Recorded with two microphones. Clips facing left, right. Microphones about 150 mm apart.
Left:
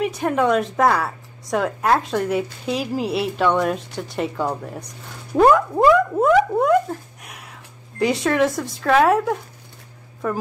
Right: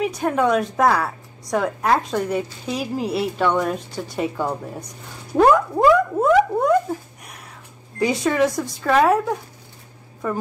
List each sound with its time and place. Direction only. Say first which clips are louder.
0.0 s a woman's voice: even; centre (ahead or behind)
5.4 s a sound: left 1 dB; centre (ahead or behind)
8.0 s a woman's voice: even; centre (ahead or behind)